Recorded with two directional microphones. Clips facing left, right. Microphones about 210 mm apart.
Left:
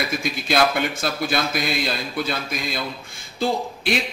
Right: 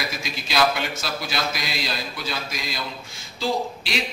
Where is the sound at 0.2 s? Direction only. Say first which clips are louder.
Left 1 dB; 55° left (ahead or behind).